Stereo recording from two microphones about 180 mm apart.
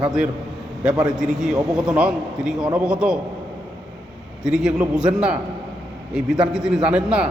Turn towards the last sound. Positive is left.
turn(degrees=-5)  # may be behind; listen again after turning